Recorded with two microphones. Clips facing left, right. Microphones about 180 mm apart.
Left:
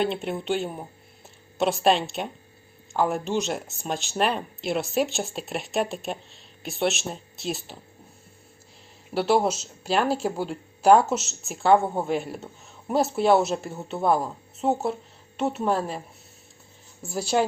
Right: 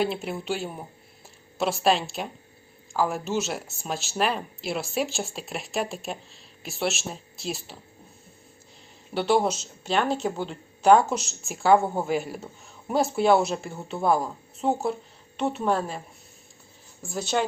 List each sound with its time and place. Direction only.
0.0 s speech: centre (ahead or behind)
9.1 s speech: 5° left (ahead or behind)
17.0 s speech: 5° left (ahead or behind)